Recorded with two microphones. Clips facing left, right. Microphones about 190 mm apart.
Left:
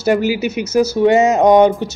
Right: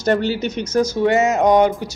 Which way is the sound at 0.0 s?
10° left (ahead or behind).